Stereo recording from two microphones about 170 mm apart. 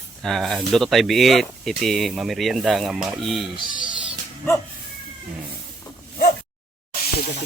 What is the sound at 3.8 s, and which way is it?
Music, 30° right (ahead or behind).